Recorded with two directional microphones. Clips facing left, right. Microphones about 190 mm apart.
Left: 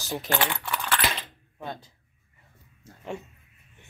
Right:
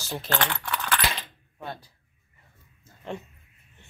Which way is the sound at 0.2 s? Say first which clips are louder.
Right 1 dB; 10° left (ahead or behind).